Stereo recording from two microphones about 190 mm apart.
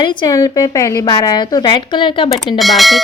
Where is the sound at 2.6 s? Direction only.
Centre (ahead or behind).